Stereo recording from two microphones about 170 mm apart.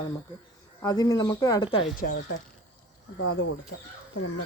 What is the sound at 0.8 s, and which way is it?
Speech, 20° left (ahead or behind).